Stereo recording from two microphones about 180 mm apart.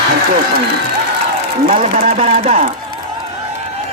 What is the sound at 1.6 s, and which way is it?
A man's voice, 40° right (ahead or behind).